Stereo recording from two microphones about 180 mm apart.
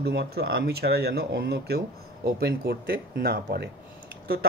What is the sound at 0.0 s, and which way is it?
Speech, 65° right (ahead or behind).